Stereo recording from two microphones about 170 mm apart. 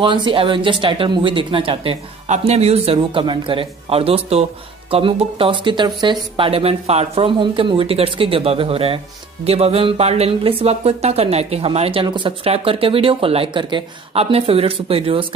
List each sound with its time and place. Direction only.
0.0 s speech: 30° right (ahead or behind)